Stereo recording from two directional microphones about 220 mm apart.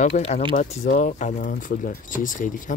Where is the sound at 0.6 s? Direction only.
35° left (ahead or behind).